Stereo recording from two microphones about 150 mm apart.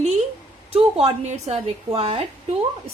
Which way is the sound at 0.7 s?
40° right (ahead or behind).